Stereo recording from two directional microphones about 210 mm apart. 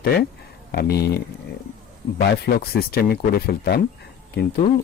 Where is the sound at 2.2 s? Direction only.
45° left (ahead or behind).